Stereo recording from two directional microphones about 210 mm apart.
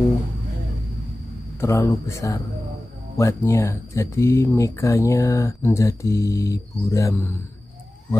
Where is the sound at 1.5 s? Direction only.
10° left (ahead or behind).